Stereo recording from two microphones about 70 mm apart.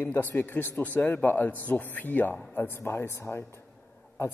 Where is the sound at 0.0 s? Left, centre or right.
Left.